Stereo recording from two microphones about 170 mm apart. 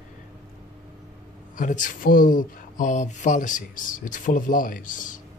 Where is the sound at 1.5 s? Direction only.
50° left (ahead or behind).